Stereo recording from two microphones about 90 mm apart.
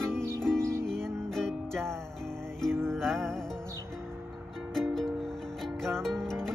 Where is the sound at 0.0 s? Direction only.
30° right (ahead or behind).